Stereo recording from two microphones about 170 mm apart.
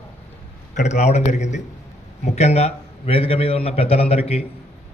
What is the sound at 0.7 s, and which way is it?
A man's voice, 45° left (ahead or behind).